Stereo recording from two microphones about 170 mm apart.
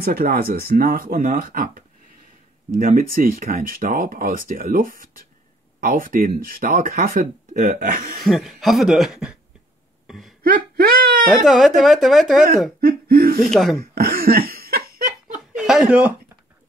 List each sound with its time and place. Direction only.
0.0 s speech: 60° right (ahead or behind)
8.2 s speech: centre (ahead or behind)
10.0 s a sound: centre (ahead or behind)
10.4 s crying: 60° right (ahead or behind)
11.3 s speech: centre (ahead or behind)
12.8 s laughter: 60° right (ahead or behind)
13.5 s speech: centre (ahead or behind)
13.9 s laughter: 60° right (ahead or behind)
15.5 s chuckle: 5° right (ahead or behind)